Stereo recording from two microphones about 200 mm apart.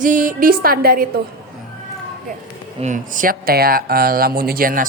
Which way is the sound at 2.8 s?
40° right (ahead or behind).